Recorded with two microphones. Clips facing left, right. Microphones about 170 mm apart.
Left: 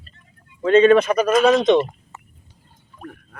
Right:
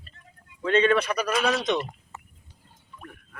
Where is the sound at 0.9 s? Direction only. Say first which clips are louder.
Left 9 dB; 25° left (ahead or behind).